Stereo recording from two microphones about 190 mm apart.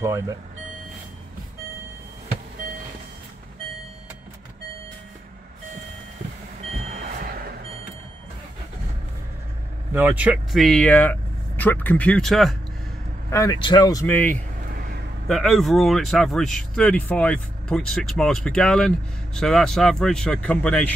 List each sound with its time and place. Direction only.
0.0 s speech: 15° right (ahead or behind)
6.9 s a sound: 40° right (ahead or behind)
9.9 s speech: 10° right (ahead or behind)
13.3 s speech: 20° left (ahead or behind)
14.8 s a sound: 60° right (ahead or behind)
15.2 s speech: centre (ahead or behind)